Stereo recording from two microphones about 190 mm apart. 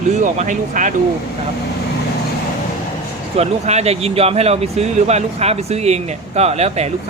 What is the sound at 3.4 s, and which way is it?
Speech, 35° right (ahead or behind).